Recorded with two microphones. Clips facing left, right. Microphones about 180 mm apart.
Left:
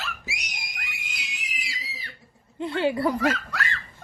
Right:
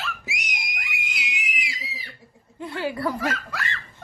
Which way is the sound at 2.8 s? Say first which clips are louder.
Left 3 dB; 25° left (ahead or behind).